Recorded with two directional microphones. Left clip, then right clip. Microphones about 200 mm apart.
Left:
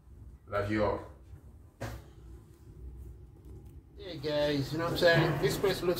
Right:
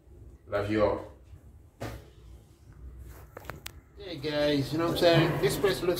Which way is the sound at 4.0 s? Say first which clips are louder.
Right 2 dB; centre (ahead or behind).